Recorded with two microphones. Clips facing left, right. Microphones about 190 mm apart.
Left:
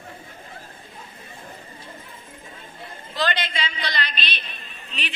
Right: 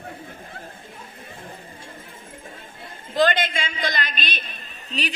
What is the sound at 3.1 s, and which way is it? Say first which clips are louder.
A woman's voice: right 6 dB; 50° right (ahead or behind).